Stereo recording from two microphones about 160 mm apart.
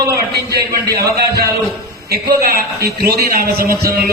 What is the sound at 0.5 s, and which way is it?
A man's voice, 75° right (ahead or behind).